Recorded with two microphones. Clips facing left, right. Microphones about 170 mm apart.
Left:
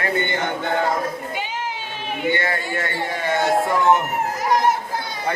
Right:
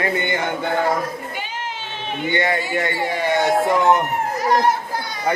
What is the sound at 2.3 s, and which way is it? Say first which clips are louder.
A man's voice: right 4 dB; 20° right (ahead or behind).